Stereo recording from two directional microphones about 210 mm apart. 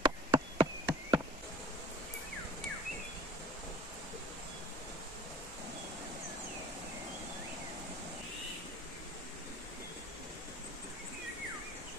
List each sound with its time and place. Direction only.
0.0 s insect: 20° right (ahead or behind)